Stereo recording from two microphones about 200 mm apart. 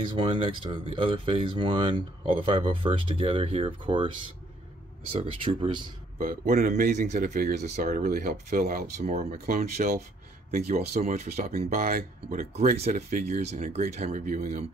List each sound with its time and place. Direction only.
0.1 s speech: 25° right (ahead or behind)
5.1 s speech: 25° right (ahead or behind)
6.1 s speech: 40° right (ahead or behind)
8.0 s speech: 50° right (ahead or behind)
10.5 s speech: 50° right (ahead or behind)